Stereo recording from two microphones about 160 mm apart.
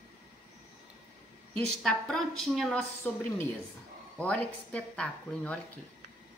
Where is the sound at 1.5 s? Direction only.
5° left (ahead or behind).